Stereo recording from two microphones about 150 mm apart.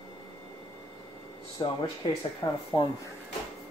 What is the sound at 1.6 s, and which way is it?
Speech, 30° left (ahead or behind).